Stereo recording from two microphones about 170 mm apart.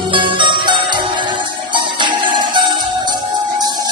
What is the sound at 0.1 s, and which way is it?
Music, 30° right (ahead or behind).